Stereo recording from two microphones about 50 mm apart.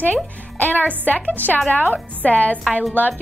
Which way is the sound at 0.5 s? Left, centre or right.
Left.